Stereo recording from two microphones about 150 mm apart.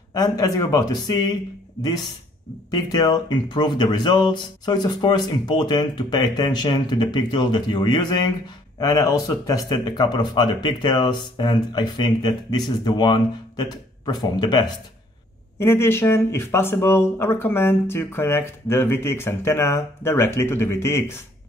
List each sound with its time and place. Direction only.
0.1 s speech: 25° left (ahead or behind)
15.6 s speech: 15° left (ahead or behind)